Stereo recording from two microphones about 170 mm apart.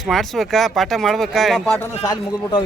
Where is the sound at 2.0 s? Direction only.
20° left (ahead or behind).